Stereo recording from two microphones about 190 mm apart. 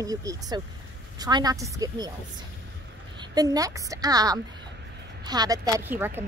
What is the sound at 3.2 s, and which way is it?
A woman's voice, 20° right (ahead or behind).